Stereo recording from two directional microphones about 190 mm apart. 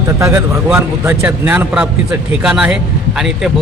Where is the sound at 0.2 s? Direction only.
15° right (ahead or behind).